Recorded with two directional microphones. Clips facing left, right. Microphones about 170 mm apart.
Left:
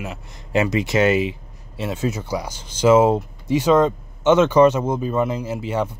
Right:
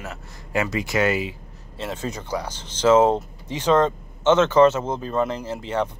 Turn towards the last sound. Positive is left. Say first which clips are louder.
# left 2 dB
turn(degrees=10)  # may be behind; listen again after turning